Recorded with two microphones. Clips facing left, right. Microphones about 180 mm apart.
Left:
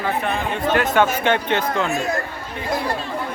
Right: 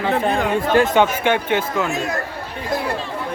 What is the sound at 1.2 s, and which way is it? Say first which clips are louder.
Speech: right 1 dB; 10° right (ahead or behind).